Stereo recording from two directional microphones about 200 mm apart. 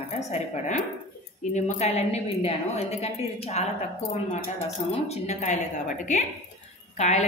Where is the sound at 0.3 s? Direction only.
35° left (ahead or behind).